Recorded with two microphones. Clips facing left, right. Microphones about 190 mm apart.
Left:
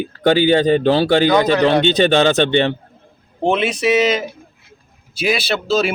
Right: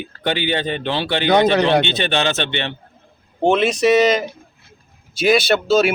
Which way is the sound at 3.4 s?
Centre (ahead or behind).